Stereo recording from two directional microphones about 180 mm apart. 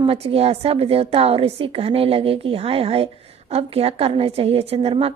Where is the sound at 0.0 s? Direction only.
30° right (ahead or behind).